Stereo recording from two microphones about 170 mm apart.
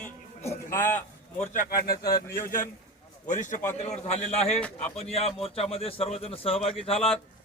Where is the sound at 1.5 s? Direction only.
60° left (ahead or behind).